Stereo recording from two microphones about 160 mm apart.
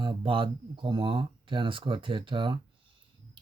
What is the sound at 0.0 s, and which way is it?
Speech, 30° right (ahead or behind).